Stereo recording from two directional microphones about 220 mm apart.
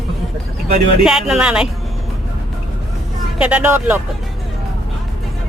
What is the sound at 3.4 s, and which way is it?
Speech, 5° right (ahead or behind).